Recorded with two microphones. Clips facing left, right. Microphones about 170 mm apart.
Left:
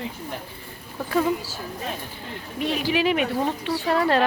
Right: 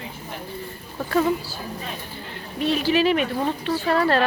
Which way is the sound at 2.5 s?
15° left (ahead or behind).